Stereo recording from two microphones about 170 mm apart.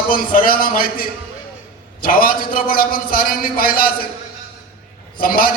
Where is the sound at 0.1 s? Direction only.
55° left (ahead or behind).